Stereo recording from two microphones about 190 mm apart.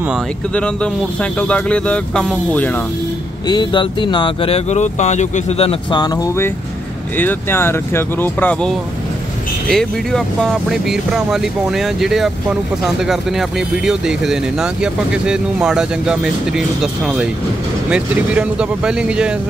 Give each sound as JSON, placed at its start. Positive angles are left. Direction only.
{"t": 1.5, "sound": "speech", "side_deg": 5}
{"t": 3.4, "sound": "speech", "side_deg": 25}